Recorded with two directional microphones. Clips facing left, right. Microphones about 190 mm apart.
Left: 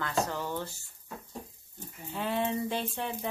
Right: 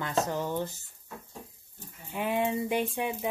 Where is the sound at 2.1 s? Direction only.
15° right (ahead or behind).